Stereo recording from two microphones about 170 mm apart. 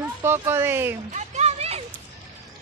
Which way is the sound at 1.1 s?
40° right (ahead or behind).